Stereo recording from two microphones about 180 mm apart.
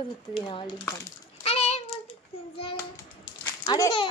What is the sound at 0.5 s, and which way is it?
Speech, 25° left (ahead or behind).